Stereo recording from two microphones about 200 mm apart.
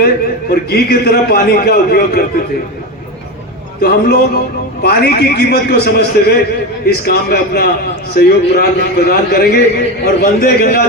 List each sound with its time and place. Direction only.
0.5 s a man's voice: 50° left (ahead or behind)
3.8 s a man's voice: 50° left (ahead or behind)